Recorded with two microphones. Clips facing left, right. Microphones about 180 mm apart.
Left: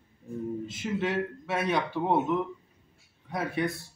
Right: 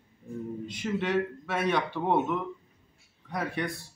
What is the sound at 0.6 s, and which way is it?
A man's voice, 5° left (ahead or behind).